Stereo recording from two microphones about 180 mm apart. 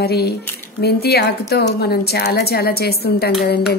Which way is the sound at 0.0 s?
60° left (ahead or behind).